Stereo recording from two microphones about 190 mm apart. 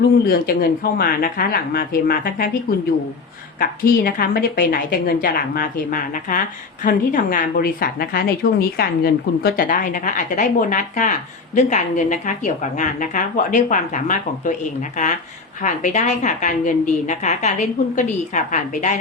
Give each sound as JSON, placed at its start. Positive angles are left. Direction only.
{"t": 0.3, "sound": "speech", "side_deg": 50}
{"t": 3.6, "sound": "a woman's voice", "side_deg": 50}